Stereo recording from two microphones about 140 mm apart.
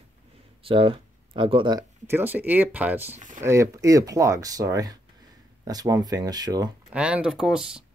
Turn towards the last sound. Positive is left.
turn(degrees=-5)  # may be behind; listen again after turning